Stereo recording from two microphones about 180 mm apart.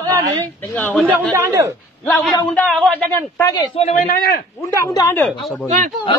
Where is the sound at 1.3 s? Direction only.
15° right (ahead or behind).